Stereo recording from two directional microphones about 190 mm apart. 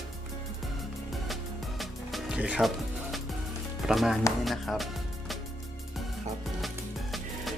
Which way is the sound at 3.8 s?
Centre (ahead or behind).